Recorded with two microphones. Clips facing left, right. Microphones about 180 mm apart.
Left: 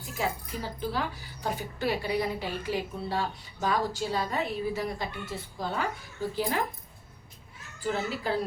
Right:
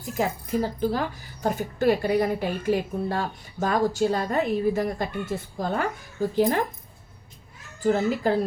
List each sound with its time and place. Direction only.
0.0 s speech: 45° right (ahead or behind)
7.8 s speech: 45° right (ahead or behind)